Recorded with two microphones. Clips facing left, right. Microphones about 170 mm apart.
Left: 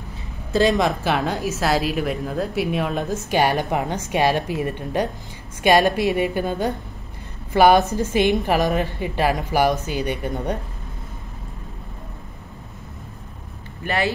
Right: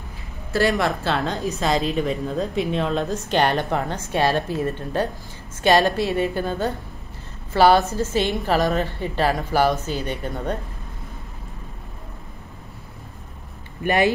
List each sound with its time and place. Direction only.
0.5 s a woman's voice: 20° left (ahead or behind)
13.8 s speech: 15° right (ahead or behind)